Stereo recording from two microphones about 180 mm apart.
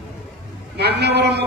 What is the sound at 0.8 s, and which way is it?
Speech, 65° right (ahead or behind).